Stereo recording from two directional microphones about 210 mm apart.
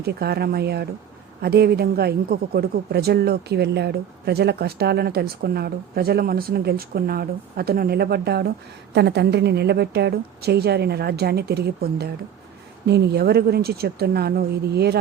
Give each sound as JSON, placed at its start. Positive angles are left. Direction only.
{"t": 0.0, "sound": "a woman's voice", "side_deg": -50}